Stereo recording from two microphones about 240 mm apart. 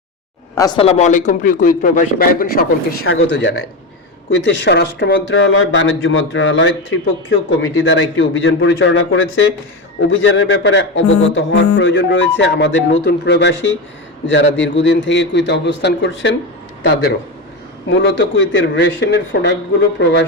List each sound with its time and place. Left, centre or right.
0.5 s a man's voice: centre; by 2.6 s left
3.0 s speech: left
17.8 s speech: left